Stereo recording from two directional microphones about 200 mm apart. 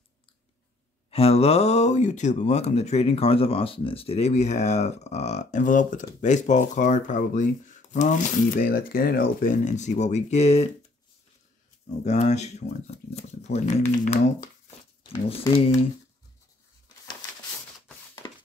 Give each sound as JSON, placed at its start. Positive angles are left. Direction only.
{"t": 1.1, "sound": "speech", "side_deg": 30}
{"t": 12.0, "sound": "speech", "side_deg": 35}
{"t": 18.2, "sound": "a sound", "side_deg": 25}